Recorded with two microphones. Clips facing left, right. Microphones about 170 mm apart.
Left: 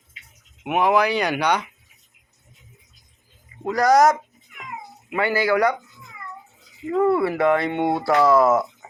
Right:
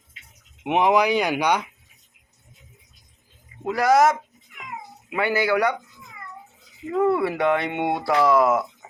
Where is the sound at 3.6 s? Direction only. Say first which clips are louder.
Left 2 dB; 5° right (ahead or behind).